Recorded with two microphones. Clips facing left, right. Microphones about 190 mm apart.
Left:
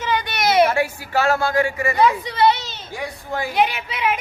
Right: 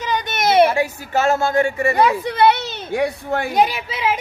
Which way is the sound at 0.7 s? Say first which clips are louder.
Right 1 dB; 20° right (ahead or behind).